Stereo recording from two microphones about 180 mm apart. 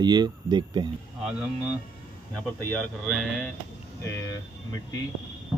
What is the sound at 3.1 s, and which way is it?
Speech, 5° left (ahead or behind).